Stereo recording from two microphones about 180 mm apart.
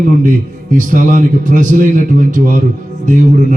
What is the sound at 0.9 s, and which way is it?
A man's voice, 45° right (ahead or behind).